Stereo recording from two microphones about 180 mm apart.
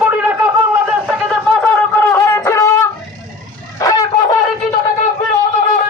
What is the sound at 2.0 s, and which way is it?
Shofar, 10° left (ahead or behind).